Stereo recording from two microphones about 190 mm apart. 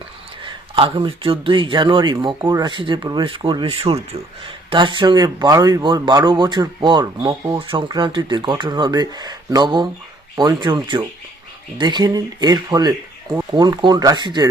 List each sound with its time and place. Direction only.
0.4 s speech: 25° right (ahead or behind)